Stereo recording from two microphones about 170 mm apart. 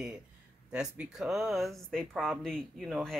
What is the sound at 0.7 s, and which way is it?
Speech, 5° right (ahead or behind).